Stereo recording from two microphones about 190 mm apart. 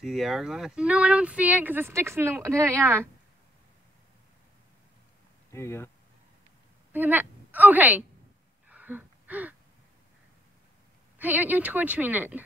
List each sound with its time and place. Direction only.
0.0 s speech: centre (ahead or behind)
5.5 s speech: 15° left (ahead or behind)
6.9 s a woman's voice: 10° right (ahead or behind)
8.6 s gasp: 10° right (ahead or behind)
11.1 s speech: 10° right (ahead or behind)